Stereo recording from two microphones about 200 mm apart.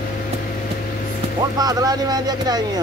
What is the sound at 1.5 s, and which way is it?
Speech, 20° right (ahead or behind).